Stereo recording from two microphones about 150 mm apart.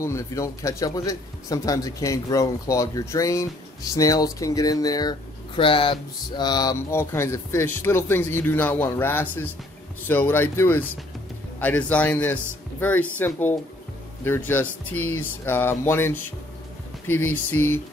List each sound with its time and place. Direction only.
0.0 s speech: 20° left (ahead or behind)
5.6 s speech: 35° left (ahead or behind); by 17.8 s 15° left (ahead or behind)